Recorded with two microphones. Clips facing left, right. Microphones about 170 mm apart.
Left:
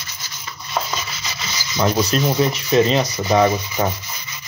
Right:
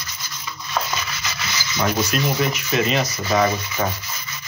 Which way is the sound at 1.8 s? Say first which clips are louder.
Left 3 dB; 30° left (ahead or behind).